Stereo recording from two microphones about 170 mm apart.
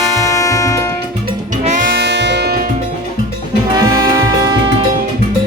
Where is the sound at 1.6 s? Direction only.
45° right (ahead or behind).